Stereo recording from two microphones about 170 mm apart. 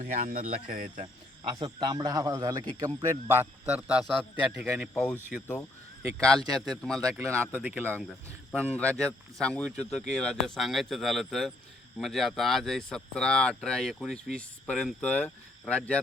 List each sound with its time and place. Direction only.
0.0 s speech: 45° right (ahead or behind)
1.0 s a man's voice: 25° right (ahead or behind); by 4.8 s centre (ahead or behind)
6.1 s speech: 5° left (ahead or behind)
7.1 s speech: 15° right (ahead or behind)
8.7 s speech: 5° left (ahead or behind)